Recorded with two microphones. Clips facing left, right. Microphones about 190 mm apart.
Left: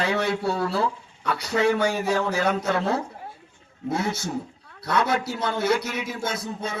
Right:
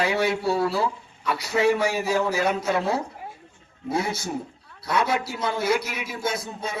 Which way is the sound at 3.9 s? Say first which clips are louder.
Even; 10° right (ahead or behind).